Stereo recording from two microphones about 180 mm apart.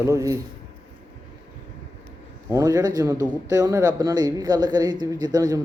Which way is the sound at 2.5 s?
20° right (ahead or behind).